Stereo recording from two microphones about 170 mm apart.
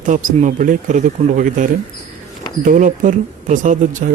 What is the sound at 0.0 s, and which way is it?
Speech, 50° right (ahead or behind).